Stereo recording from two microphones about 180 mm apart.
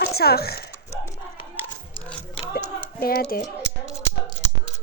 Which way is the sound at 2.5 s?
55° left (ahead or behind).